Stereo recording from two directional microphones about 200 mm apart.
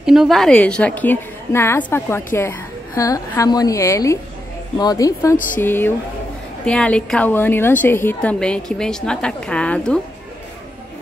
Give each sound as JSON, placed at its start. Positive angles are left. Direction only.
{"t": 0.0, "sound": "a woman's voice", "side_deg": 0}